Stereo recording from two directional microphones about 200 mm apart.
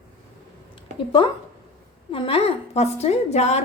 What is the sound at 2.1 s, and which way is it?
A woman's voice, 30° left (ahead or behind).